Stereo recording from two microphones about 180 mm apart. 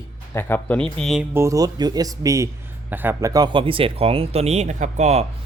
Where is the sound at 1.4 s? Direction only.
20° right (ahead or behind); by 5.2 s 40° right (ahead or behind).